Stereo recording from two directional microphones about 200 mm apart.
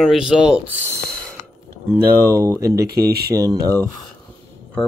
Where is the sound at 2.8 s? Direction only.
50° right (ahead or behind).